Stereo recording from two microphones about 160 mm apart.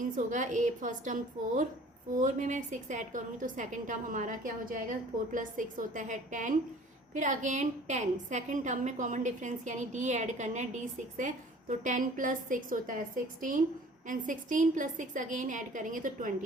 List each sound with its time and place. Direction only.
0.2 s a woman's voice: 50° right (ahead or behind)
14.1 s a woman's voice: 55° right (ahead or behind)